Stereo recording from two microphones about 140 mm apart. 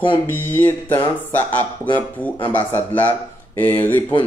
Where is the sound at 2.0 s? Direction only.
10° left (ahead or behind).